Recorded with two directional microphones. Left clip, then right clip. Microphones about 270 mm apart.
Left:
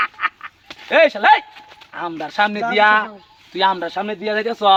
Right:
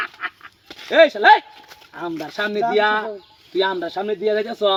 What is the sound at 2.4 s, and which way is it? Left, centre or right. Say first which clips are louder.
A man's voice: left 3 dB; centre.